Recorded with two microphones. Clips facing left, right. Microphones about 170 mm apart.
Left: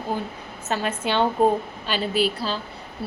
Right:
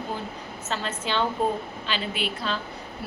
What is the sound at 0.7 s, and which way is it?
Speech, 55° left (ahead or behind).